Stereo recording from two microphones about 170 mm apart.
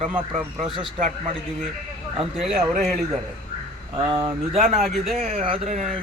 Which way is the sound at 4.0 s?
25° right (ahead or behind).